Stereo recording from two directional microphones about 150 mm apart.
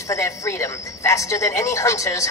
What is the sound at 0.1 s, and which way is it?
A woman's voice, 20° left (ahead or behind).